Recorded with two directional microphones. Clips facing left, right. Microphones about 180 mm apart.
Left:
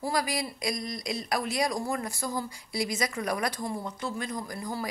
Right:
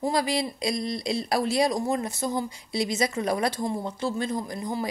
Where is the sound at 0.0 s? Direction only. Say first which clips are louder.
Right 4 dB; 25° right (ahead or behind).